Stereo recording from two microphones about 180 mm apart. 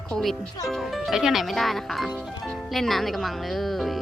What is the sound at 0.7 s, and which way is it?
Speech, centre (ahead or behind).